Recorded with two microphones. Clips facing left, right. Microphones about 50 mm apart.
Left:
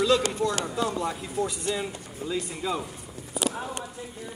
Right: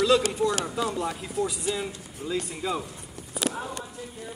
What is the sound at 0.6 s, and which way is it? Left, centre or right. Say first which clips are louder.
Speech: even; centre.